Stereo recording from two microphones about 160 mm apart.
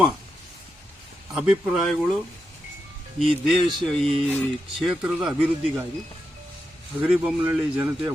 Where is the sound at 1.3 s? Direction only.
5° right (ahead or behind).